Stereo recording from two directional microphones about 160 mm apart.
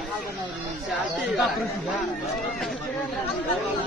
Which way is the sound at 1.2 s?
Centre (ahead or behind).